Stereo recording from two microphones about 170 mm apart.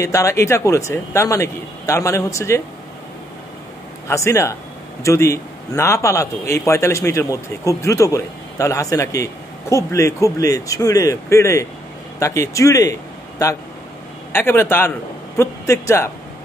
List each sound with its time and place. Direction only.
0.0 s a man's voice: 15° left (ahead or behind)
4.1 s a man's voice: 15° left (ahead or behind)
14.3 s a man's voice: 15° left (ahead or behind)